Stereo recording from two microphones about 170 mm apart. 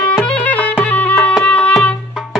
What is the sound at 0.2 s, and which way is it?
Music, 10° left (ahead or behind).